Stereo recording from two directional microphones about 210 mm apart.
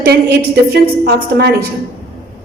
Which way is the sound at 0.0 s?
50° right (ahead or behind).